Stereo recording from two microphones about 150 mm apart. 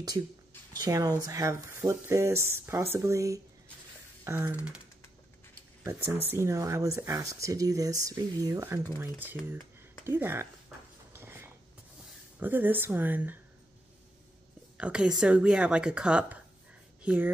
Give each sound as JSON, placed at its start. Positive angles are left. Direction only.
{"t": 0.7, "sound": "speech", "side_deg": -25}
{"t": 6.3, "sound": "speech", "side_deg": -20}
{"t": 11.1, "sound": "a sound", "side_deg": -15}
{"t": 12.4, "sound": "speech", "side_deg": -15}
{"t": 14.8, "sound": "speech", "side_deg": -5}